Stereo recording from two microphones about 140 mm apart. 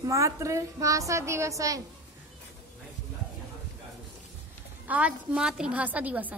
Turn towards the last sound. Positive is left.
turn(degrees=-10)  # may be behind; listen again after turning